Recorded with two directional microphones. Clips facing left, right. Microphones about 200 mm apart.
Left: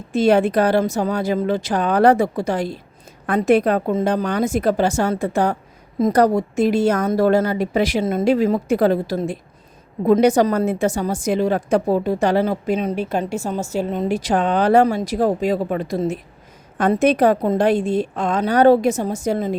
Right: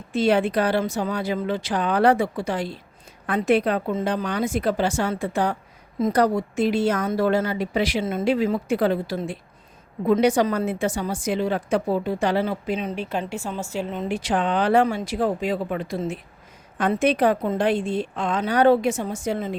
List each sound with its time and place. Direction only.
0.1 s a woman's voice: 45° left (ahead or behind)